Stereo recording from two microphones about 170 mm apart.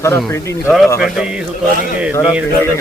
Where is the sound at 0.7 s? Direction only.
Centre (ahead or behind).